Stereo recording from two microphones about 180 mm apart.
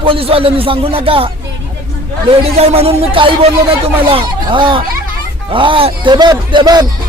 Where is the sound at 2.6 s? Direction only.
35° right (ahead or behind).